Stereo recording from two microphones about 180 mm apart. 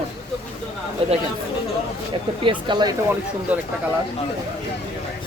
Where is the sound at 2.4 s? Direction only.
30° right (ahead or behind).